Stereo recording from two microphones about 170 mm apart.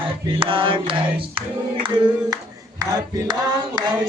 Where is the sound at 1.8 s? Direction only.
25° right (ahead or behind).